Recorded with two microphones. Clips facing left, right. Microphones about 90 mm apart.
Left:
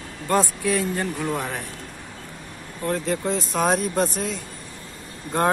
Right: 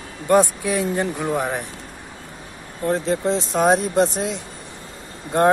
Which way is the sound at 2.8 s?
30° right (ahead or behind).